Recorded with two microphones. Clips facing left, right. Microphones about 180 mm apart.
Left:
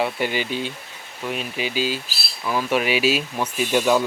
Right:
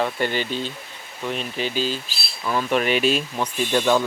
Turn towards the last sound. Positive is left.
turn(degrees=5)  # may be behind; listen again after turning